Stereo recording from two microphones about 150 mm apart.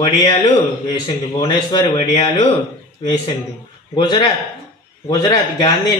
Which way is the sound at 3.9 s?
30° left (ahead or behind).